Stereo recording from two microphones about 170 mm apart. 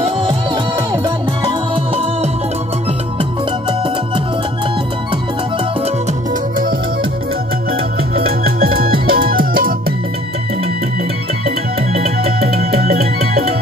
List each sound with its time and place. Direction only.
0.0 s music: 30° right (ahead or behind)
9.0 s music: 60° right (ahead or behind)
11.4 s music: 35° right (ahead or behind)